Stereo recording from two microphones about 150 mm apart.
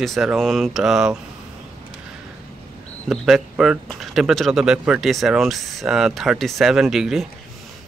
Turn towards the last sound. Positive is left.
turn(degrees=0)  # may be behind; listen again after turning